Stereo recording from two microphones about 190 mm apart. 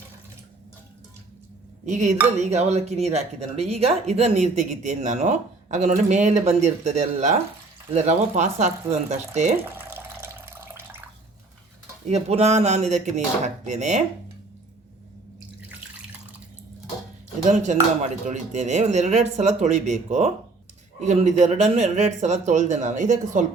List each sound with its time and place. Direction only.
1.9 s speech: 40° right (ahead or behind)
9.6 s a sound: 10° right (ahead or behind)
12.0 s speech: 35° right (ahead or behind)
17.4 s speech: 40° right (ahead or behind)